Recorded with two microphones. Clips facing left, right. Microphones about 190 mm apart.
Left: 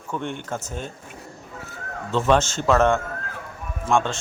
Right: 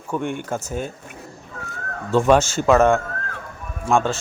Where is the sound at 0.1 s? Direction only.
10° right (ahead or behind).